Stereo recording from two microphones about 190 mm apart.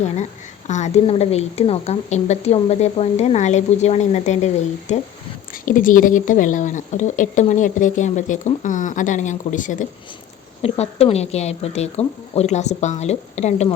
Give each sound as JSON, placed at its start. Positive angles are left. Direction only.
{"t": 0.7, "sound": "a woman's voice", "side_deg": 35}